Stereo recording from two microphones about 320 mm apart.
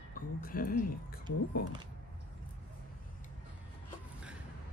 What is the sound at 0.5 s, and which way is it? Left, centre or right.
Speech, left.